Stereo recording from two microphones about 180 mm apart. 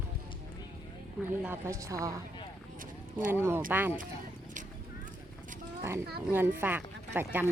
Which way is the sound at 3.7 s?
10° right (ahead or behind).